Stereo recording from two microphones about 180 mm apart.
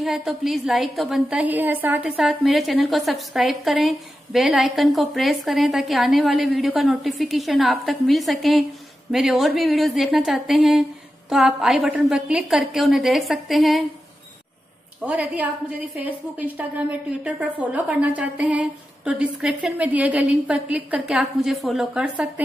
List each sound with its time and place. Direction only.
0.0 s a woman's voice: centre (ahead or behind)
15.0 s a woman's voice: 10° right (ahead or behind)